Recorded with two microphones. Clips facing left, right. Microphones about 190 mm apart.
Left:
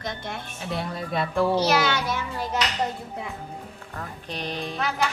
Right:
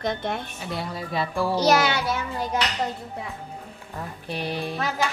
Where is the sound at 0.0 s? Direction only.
55° right (ahead or behind).